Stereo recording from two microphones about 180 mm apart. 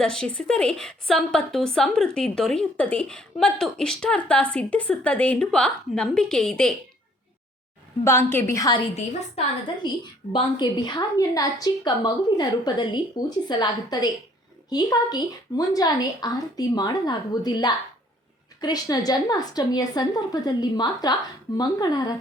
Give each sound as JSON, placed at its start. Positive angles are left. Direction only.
{"t": 0.0, "sound": "a woman's voice", "side_deg": 5}
{"t": 8.3, "sound": "a woman's voice", "side_deg": 15}
{"t": 9.8, "sound": "speech", "side_deg": 25}